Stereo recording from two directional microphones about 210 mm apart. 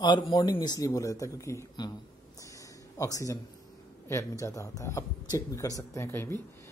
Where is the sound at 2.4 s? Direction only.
15° left (ahead or behind).